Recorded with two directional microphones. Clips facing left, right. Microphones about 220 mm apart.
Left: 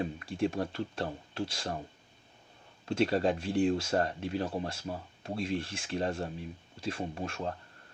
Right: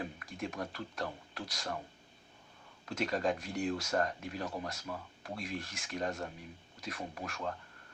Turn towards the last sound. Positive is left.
turn(degrees=25)  # may be behind; listen again after turning